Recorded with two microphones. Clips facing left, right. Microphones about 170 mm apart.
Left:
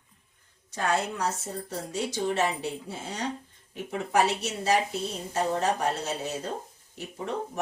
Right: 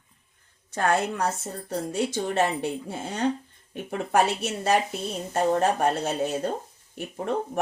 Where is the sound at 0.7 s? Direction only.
55° right (ahead or behind).